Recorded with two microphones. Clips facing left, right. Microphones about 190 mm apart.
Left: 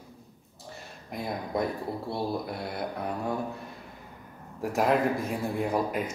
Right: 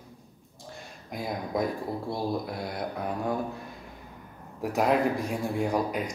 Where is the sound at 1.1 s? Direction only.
Centre (ahead or behind).